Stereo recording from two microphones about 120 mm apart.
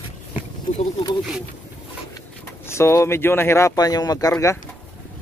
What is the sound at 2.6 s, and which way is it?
Speech, 20° left (ahead or behind).